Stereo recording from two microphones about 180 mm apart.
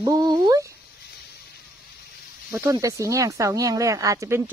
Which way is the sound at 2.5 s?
15° right (ahead or behind).